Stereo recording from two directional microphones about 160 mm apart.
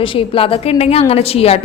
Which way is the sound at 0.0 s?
35° left (ahead or behind).